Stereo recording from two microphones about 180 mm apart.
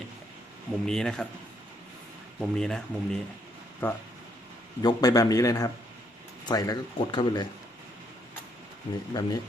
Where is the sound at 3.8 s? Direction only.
10° left (ahead or behind).